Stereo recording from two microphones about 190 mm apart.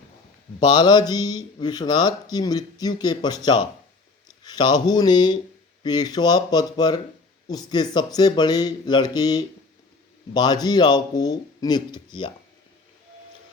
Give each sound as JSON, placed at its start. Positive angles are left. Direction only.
{"t": 0.6, "sound": "speech", "side_deg": 20}